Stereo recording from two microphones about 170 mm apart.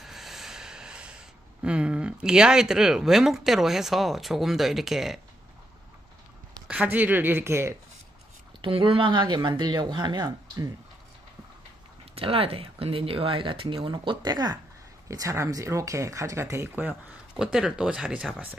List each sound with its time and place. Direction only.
0.0 s a sound: centre (ahead or behind)
1.6 s speech: 5° right (ahead or behind)
6.7 s speech: 10° right (ahead or behind)
8.5 s speech: 30° right (ahead or behind)
12.2 s speech: 35° right (ahead or behind); by 18.6 s 5° right (ahead or behind)